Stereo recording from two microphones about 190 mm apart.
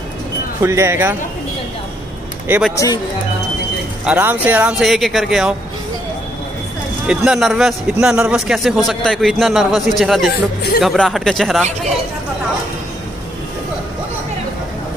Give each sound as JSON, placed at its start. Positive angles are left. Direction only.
{"t": 0.6, "sound": "speech", "side_deg": -15}
{"t": 2.4, "sound": "a man's voice", "side_deg": -10}
{"t": 2.7, "sound": "speech", "side_deg": 15}
{"t": 4.0, "sound": "a man's voice", "side_deg": -10}
{"t": 7.1, "sound": "a man's voice", "side_deg": 0}